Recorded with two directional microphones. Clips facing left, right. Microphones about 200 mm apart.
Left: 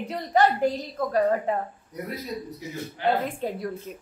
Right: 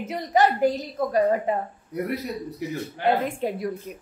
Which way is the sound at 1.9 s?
65° right (ahead or behind).